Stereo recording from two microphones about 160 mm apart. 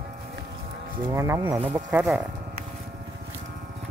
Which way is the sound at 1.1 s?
15° right (ahead or behind).